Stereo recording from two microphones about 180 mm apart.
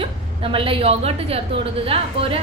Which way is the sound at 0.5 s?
30° right (ahead or behind).